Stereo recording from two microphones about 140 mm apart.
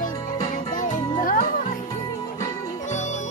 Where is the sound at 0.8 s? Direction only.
70° left (ahead or behind).